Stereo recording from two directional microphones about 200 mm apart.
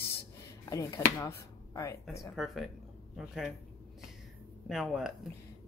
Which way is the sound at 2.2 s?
Centre (ahead or behind).